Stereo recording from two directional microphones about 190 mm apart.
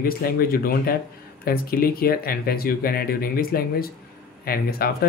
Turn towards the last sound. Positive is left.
turn(degrees=50)  # may be behind; listen again after turning